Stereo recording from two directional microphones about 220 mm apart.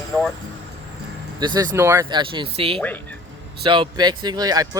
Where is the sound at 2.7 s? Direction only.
5° left (ahead or behind).